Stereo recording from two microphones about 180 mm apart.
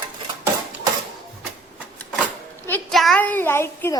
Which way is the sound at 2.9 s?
Centre (ahead or behind).